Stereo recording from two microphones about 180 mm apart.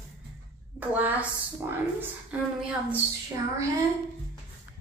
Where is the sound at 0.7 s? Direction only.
10° right (ahead or behind).